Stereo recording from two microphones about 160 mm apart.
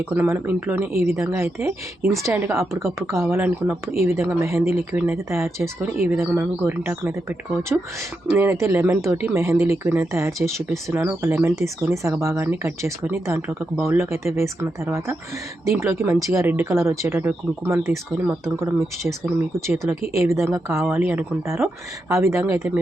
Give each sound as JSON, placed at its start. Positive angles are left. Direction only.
{"t": 0.0, "sound": "speech", "side_deg": -15}